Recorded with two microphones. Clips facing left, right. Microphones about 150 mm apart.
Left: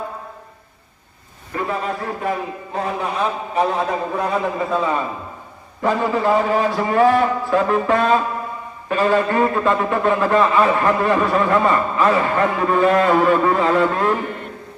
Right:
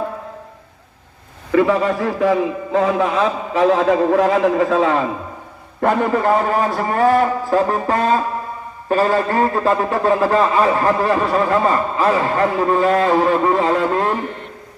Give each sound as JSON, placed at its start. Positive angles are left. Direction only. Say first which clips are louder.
{"t": 1.5, "sound": "a man's voice", "louder": "right 9 dB", "side_deg": -90}
{"t": 5.8, "sound": "a man's voice", "louder": "right 2 dB", "side_deg": -55}
{"t": 12.9, "sound": "a sound", "louder": "even", "side_deg": -30}